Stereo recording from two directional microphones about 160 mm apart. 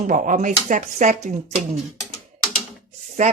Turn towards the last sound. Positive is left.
turn(degrees=-45)  # may be behind; listen again after turning